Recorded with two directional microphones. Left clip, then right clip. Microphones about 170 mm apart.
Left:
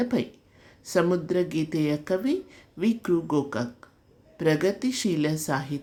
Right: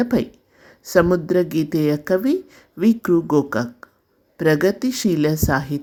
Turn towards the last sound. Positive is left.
turn(degrees=-45)  # may be behind; listen again after turning